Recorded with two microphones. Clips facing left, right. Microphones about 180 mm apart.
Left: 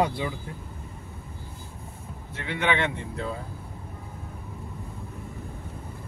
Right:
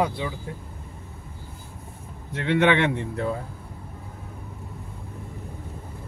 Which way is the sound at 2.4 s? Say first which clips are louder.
Right 6 dB; 70° right (ahead or behind).